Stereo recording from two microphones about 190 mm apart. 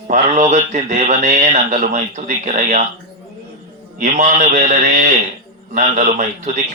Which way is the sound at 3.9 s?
40° right (ahead or behind).